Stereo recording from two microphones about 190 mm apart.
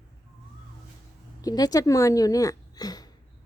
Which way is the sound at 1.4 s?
20° left (ahead or behind).